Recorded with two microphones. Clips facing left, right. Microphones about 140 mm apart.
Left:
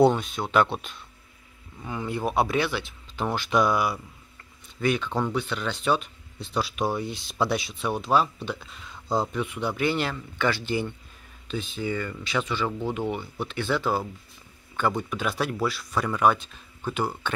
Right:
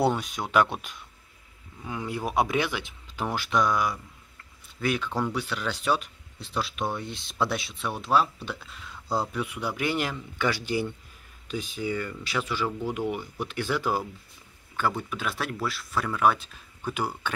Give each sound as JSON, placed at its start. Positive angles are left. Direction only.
{"t": 0.0, "sound": "speech", "side_deg": -10}
{"t": 3.5, "sound": "speech", "side_deg": 10}
{"t": 4.8, "sound": "speech", "side_deg": -5}